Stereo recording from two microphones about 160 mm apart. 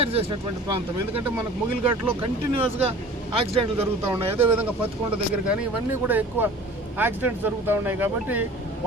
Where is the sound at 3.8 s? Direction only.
15° right (ahead or behind).